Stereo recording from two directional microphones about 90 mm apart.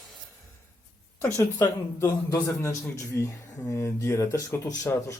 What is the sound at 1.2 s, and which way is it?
Speech, 30° left (ahead or behind).